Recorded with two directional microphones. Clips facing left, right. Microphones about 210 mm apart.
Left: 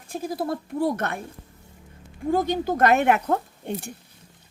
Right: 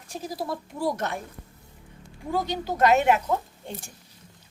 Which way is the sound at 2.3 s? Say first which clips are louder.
Left 5 dB; 50° left (ahead or behind).